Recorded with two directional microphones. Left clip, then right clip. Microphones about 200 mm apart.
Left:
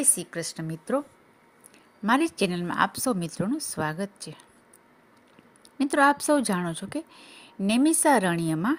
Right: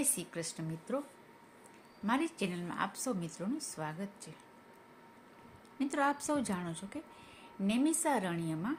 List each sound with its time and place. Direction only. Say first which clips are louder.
0.0 s speech: left 8 dB; 40° left (ahead or behind)
2.0 s speech: left 11 dB; 45° left (ahead or behind)
5.8 s speech: left 12 dB; 45° left (ahead or behind)